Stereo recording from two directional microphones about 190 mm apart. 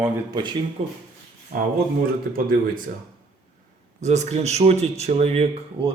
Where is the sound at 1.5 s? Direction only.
45° right (ahead or behind).